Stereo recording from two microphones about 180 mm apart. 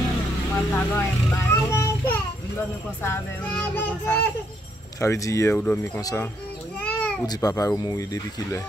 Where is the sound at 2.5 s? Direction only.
15° left (ahead or behind).